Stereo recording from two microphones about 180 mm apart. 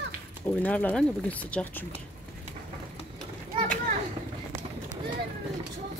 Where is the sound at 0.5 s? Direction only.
5° left (ahead or behind).